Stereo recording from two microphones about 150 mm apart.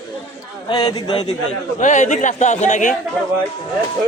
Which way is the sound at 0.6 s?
25° left (ahead or behind).